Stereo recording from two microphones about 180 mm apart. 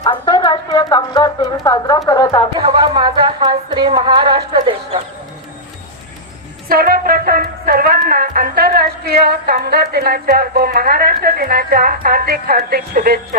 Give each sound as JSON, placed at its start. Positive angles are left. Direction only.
{"t": 0.0, "sound": "speech", "side_deg": 25}
{"t": 2.6, "sound": "music", "side_deg": -25}
{"t": 6.7, "sound": "speech", "side_deg": -55}